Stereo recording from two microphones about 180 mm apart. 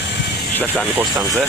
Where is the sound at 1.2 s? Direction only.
15° right (ahead or behind).